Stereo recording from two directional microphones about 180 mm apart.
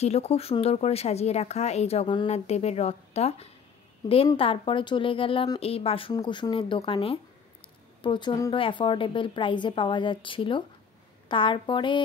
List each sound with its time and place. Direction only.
0.0 s speech: 35° left (ahead or behind)